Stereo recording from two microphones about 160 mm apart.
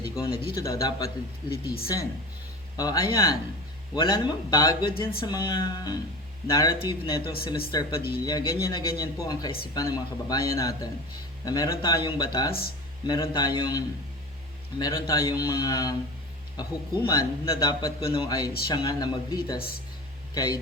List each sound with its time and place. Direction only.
0.2 s a man's voice: 20° left (ahead or behind)
1.5 s speech: 75° left (ahead or behind)
2.7 s a man's voice: 25° left (ahead or behind)
19.5 s speech: 70° left (ahead or behind)
20.3 s speech: 25° left (ahead or behind)